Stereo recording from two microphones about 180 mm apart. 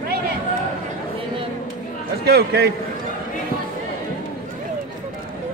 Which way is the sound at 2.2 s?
65° right (ahead or behind).